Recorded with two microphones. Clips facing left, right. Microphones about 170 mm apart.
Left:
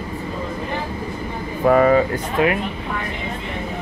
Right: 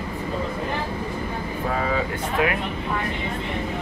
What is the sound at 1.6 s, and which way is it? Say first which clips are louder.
Speech: left 12 dB; 65° left (ahead or behind).